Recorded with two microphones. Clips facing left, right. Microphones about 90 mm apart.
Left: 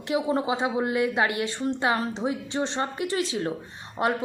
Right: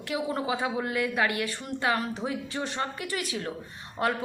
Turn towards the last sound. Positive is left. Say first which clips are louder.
# left 3 dB
turn(degrees=25)  # may be behind; listen again after turning